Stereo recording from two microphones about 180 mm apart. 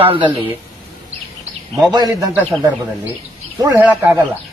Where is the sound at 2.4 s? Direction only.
Centre (ahead or behind).